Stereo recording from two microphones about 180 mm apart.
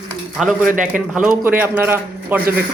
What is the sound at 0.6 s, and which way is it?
Speech, 45° right (ahead or behind).